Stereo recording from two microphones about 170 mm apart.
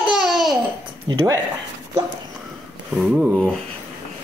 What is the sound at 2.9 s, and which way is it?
Speech, 5° right (ahead or behind).